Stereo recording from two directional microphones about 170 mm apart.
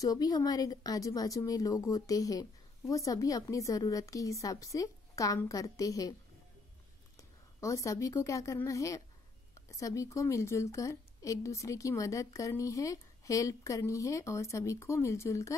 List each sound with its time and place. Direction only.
0.0 s a woman's voice: 20° left (ahead or behind)
7.2 s a woman's voice: 20° left (ahead or behind)